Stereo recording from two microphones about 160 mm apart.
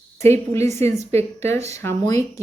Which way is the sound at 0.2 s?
15° left (ahead or behind).